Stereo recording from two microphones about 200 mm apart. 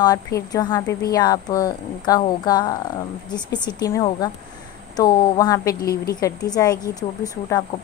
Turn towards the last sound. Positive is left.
turn(degrees=15)  # may be behind; listen again after turning